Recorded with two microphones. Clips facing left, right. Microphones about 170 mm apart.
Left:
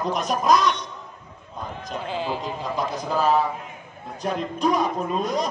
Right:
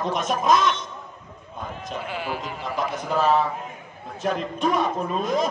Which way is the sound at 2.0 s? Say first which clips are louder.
Left 4 dB; 25° left (ahead or behind).